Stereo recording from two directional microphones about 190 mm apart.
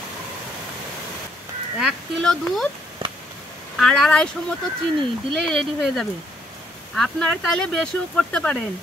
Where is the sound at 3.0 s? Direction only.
25° right (ahead or behind).